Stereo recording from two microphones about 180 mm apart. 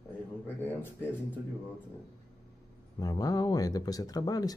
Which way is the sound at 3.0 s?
20° left (ahead or behind).